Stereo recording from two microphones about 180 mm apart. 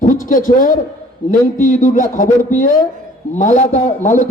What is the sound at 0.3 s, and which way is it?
A man's voice, 50° left (ahead or behind).